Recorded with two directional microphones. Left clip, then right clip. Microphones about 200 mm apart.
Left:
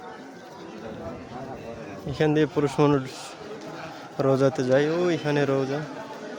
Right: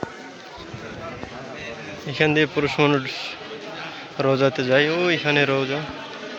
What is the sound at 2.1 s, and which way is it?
A man's voice, 15° left (ahead or behind).